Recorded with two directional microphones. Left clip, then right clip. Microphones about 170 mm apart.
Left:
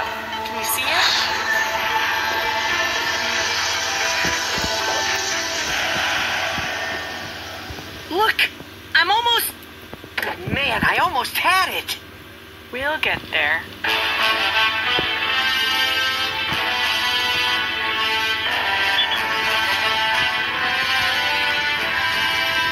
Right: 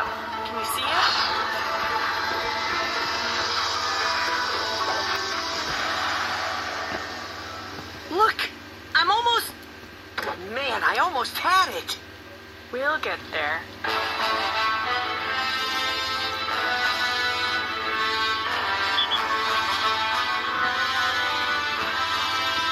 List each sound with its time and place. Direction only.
0.4 s music: 35° left (ahead or behind)
8.2 s a sound: 35° left (ahead or behind)
12.8 s music: 35° left (ahead or behind)